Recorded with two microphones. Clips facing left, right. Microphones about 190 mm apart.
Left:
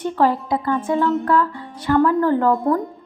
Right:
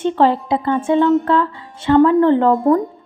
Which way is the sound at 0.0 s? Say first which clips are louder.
Right 3 dB; 25° right (ahead or behind).